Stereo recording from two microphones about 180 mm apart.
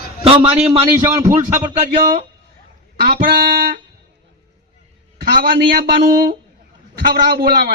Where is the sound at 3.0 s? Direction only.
60° right (ahead or behind).